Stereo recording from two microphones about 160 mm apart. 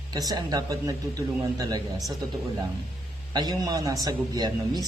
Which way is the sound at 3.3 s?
25° right (ahead or behind).